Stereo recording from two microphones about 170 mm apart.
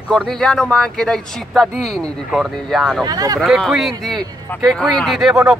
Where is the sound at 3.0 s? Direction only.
20° right (ahead or behind).